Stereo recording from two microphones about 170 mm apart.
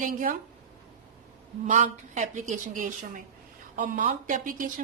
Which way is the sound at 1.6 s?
45° right (ahead or behind).